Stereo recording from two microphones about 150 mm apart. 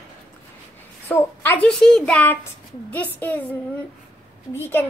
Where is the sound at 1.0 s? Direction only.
15° left (ahead or behind).